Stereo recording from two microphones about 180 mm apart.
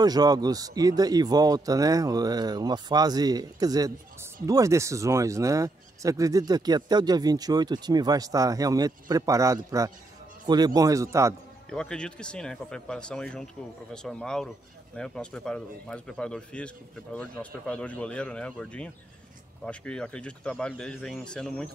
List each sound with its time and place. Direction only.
0.0 s speech: 20° right (ahead or behind)
11.7 s speech: 5° left (ahead or behind)